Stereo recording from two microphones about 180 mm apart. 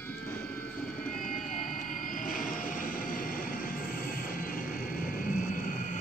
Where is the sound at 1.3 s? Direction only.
45° left (ahead or behind).